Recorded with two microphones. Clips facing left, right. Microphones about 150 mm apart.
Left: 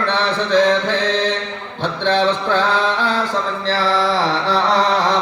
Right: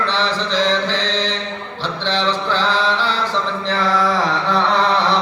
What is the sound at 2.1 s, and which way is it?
Mantra, 50° left (ahead or behind).